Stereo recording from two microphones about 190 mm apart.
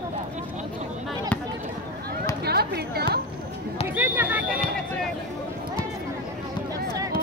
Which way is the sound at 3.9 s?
10° right (ahead or behind).